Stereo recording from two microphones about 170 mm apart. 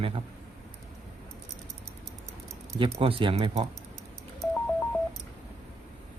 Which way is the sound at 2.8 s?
35° right (ahead or behind).